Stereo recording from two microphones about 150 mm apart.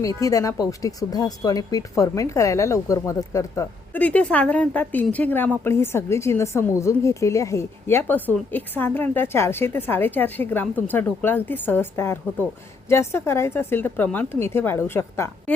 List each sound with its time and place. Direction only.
0.2 s a woman's voice: 20° left (ahead or behind)